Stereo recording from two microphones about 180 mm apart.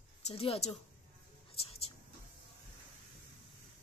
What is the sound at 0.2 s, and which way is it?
Speech, 35° left (ahead or behind).